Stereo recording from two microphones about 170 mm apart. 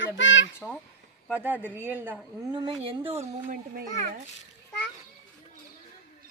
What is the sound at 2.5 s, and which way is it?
Speech, 30° right (ahead or behind).